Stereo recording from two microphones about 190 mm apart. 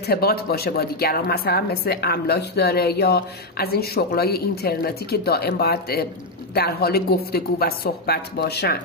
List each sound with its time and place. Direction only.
0.0 s a woman's voice: 55° left (ahead or behind)